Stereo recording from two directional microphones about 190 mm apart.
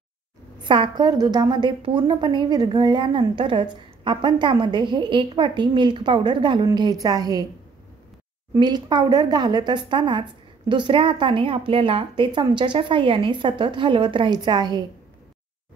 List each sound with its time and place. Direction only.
0.6 s a woman's voice: 25° right (ahead or behind)
8.5 s a woman's voice: 20° right (ahead or behind)